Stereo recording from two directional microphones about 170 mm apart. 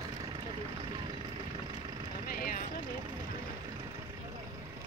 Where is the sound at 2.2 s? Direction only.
55° left (ahead or behind).